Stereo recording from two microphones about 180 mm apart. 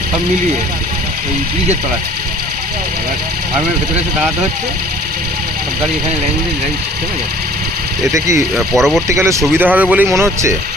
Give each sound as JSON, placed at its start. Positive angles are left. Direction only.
{"t": 8.5, "sound": "speech", "side_deg": 0}
{"t": 9.0, "sound": "speech", "side_deg": -15}